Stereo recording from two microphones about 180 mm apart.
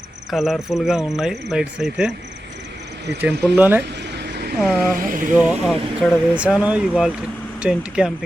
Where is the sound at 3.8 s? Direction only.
70° right (ahead or behind).